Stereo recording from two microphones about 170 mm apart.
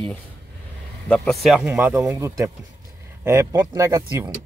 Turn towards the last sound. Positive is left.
turn(degrees=-20)  # may be behind; listen again after turning